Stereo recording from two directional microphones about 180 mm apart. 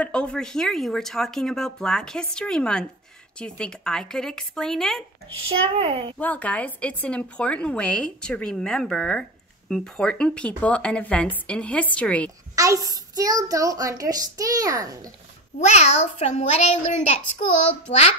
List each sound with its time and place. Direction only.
0.0 s speech: 5° left (ahead or behind)
5.7 s a child's voice: 30° right (ahead or behind)
6.1 s speech: 10° left (ahead or behind)
12.5 s a child's voice: 20° right (ahead or behind)
15.6 s a child's voice: 40° left (ahead or behind)